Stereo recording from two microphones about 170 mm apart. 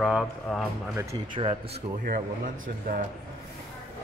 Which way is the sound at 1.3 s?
35° right (ahead or behind).